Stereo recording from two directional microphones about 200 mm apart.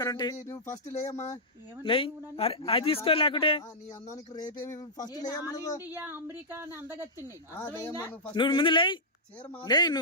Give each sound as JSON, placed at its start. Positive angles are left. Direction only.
{"t": 0.0, "sound": "speech", "side_deg": 20}
{"t": 0.9, "sound": "speech", "side_deg": 35}
{"t": 4.6, "sound": "speech", "side_deg": 15}
{"t": 5.8, "sound": "speech", "side_deg": -10}
{"t": 7.5, "sound": "speech", "side_deg": 10}